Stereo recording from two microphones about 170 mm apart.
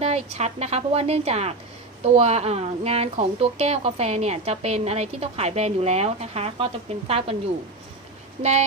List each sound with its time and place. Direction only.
0.0 s speech: 40° right (ahead or behind)
8.4 s speech: 40° right (ahead or behind)